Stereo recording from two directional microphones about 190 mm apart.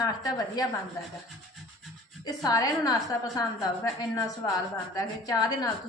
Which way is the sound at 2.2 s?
20° left (ahead or behind).